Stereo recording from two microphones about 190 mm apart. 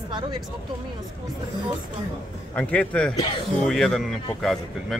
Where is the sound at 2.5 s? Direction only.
5° left (ahead or behind).